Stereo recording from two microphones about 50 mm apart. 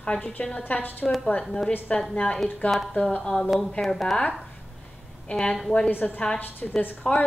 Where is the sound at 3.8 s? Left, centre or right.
Centre.